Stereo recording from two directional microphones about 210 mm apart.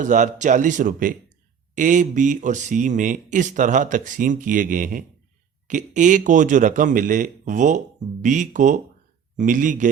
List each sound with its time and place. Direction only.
0.0 s speech: 35° right (ahead or behind)